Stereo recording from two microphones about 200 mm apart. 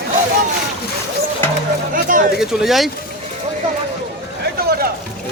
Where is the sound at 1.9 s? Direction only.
40° right (ahead or behind).